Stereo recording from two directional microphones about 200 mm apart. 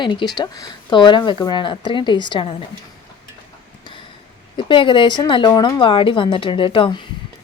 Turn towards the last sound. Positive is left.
turn(degrees=25)  # may be behind; listen again after turning